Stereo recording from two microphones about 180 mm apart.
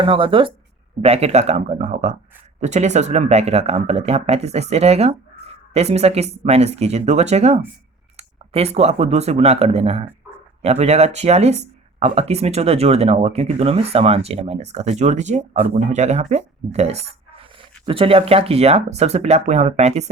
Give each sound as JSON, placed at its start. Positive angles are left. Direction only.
{"t": 0.0, "sound": "speech", "side_deg": -30}